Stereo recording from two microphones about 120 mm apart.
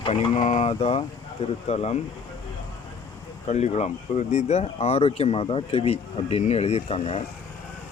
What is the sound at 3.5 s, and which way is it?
Speech, 70° left (ahead or behind).